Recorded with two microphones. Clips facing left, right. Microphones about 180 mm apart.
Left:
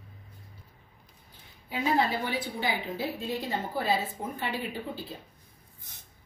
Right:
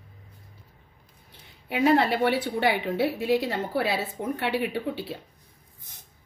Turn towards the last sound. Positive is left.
turn(degrees=-70)  # may be behind; listen again after turning